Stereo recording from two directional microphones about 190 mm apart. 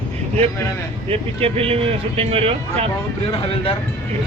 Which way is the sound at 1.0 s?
30° right (ahead or behind).